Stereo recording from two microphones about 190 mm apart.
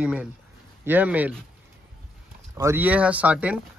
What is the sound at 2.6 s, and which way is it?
Speech, 10° right (ahead or behind).